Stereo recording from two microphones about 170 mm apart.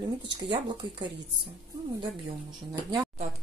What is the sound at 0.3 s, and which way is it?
Speech, 25° right (ahead or behind).